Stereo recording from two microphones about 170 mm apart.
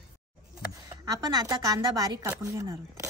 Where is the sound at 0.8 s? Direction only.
20° right (ahead or behind).